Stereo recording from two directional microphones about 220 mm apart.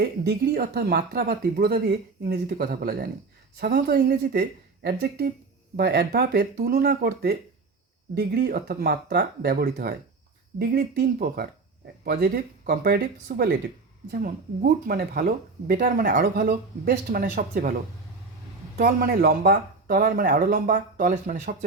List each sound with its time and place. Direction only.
0.0 s speech: 50° right (ahead or behind)
18.8 s speech: 40° right (ahead or behind)